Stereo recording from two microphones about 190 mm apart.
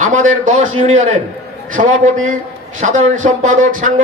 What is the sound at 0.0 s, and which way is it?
Speech, 40° right (ahead or behind).